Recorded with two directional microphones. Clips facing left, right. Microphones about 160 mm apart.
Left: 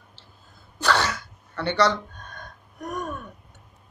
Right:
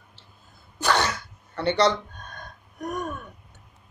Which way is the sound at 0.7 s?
15° right (ahead or behind).